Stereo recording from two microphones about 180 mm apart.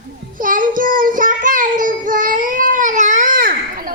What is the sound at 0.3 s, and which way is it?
Child singing, 50° right (ahead or behind).